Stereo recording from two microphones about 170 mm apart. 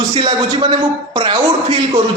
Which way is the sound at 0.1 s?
30° right (ahead or behind).